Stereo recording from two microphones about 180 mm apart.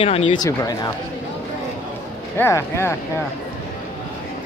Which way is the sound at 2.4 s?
15° left (ahead or behind).